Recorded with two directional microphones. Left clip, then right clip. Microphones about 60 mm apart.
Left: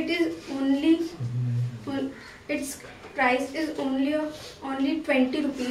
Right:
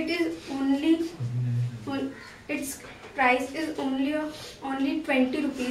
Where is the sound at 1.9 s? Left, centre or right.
Centre.